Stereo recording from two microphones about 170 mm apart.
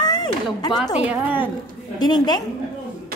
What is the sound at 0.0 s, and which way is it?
Speech, 25° left (ahead or behind).